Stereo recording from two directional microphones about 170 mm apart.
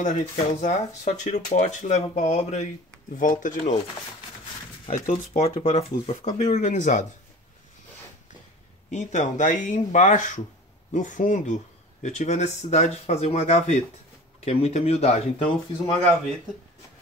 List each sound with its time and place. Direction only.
0.0 s speech: 45° left (ahead or behind)
4.8 s speech: 45° left (ahead or behind)
8.9 s speech: 45° left (ahead or behind)